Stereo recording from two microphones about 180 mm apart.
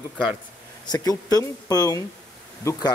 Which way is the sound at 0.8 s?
20° left (ahead or behind).